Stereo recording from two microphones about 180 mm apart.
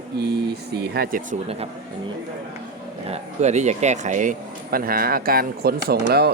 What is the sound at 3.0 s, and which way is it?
Speech, 40° right (ahead or behind).